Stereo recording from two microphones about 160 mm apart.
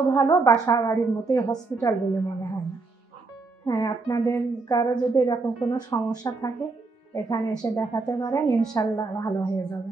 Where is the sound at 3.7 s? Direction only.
25° left (ahead or behind).